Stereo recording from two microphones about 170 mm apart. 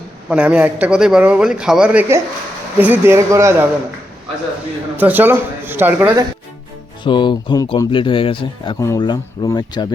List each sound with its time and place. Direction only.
0.3 s a man's voice: 5° right (ahead or behind)
4.9 s a man's voice: 10° right (ahead or behind)
7.0 s speech: 30° left (ahead or behind)